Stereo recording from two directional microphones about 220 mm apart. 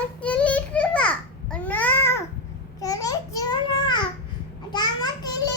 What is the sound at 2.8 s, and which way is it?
Babbling, 15° left (ahead or behind).